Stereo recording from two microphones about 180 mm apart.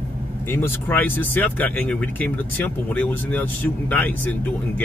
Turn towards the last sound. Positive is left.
turn(degrees=10)  # may be behind; listen again after turning